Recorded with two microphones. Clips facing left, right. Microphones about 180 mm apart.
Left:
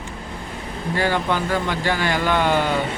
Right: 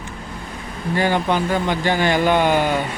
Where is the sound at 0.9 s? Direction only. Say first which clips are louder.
Right 3 dB; 20° right (ahead or behind).